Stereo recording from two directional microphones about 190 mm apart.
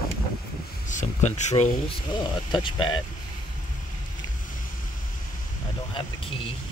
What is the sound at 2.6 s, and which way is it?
Speech, 25° left (ahead or behind).